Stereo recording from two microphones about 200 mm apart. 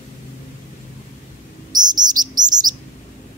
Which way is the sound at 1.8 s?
20° right (ahead or behind).